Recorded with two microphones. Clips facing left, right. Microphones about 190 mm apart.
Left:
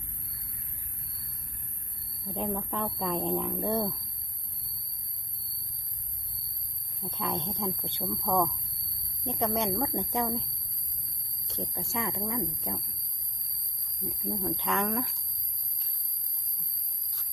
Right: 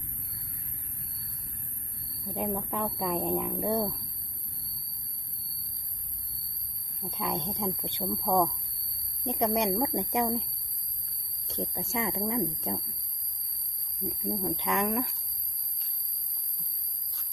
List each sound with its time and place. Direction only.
2.2 s a woman's voice: 10° right (ahead or behind)
7.1 s a woman's voice: 15° right (ahead or behind)
11.4 s speech: 20° right (ahead or behind)
14.1 s a woman's voice: 15° right (ahead or behind)